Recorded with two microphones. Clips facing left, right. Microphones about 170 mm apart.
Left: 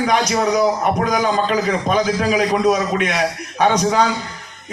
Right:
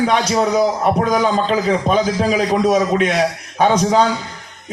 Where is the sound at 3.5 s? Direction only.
30° right (ahead or behind).